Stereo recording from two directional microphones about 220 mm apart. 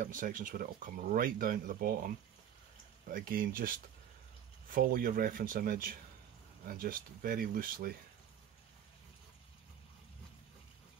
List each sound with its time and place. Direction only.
0.0 s speech: 35° right (ahead or behind)